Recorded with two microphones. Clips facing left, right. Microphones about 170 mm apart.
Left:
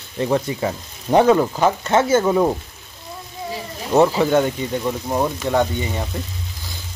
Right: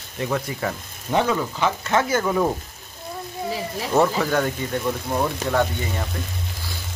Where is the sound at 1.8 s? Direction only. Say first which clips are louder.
Left 5 dB; 25° left (ahead or behind).